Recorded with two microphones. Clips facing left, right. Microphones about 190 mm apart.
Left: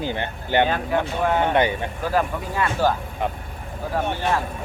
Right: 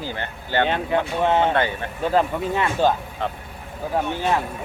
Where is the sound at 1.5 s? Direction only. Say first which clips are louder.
Left 2 dB; 15° left (ahead or behind).